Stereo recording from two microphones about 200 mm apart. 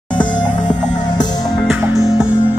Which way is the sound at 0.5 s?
40° left (ahead or behind).